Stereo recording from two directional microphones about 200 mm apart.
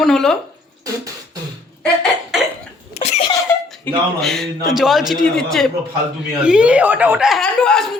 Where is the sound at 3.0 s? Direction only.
30° left (ahead or behind).